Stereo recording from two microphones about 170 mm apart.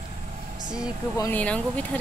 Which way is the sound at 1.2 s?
10° left (ahead or behind).